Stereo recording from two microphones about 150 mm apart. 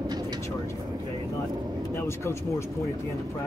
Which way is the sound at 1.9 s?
15° left (ahead or behind).